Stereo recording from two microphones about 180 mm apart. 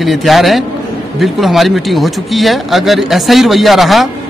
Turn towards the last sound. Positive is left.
turn(degrees=0)  # may be behind; listen again after turning